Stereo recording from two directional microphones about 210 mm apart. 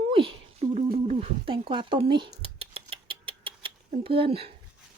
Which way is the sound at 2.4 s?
25° right (ahead or behind).